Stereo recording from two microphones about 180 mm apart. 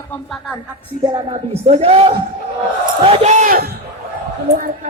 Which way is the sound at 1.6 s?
35° right (ahead or behind).